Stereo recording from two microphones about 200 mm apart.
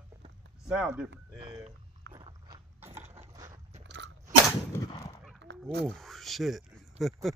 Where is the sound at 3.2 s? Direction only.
35° right (ahead or behind).